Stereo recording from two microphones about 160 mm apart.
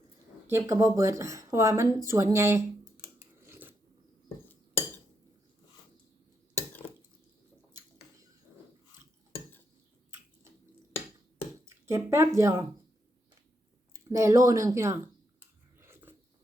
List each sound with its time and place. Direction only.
0.4 s speech: 15° right (ahead or behind)
7.7 s a sound: 15° right (ahead or behind)
11.6 s speech: 15° right (ahead or behind)
13.9 s speech: 20° right (ahead or behind)
15.8 s biting: 15° right (ahead or behind)